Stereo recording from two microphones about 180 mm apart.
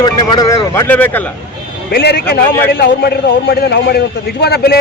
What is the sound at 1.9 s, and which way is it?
A man's voice, 60° left (ahead or behind).